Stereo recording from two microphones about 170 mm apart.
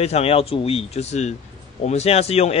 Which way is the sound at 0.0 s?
35° left (ahead or behind).